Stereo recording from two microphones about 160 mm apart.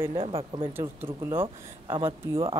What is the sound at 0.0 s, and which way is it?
Speech, 35° right (ahead or behind).